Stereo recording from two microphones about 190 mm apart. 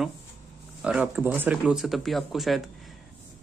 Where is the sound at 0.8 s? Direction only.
5° right (ahead or behind).